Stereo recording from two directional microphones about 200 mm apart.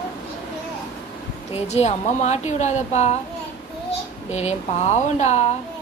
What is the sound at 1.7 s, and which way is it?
A woman's voice, 35° left (ahead or behind).